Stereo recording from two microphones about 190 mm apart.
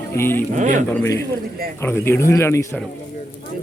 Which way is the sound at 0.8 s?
15° left (ahead or behind).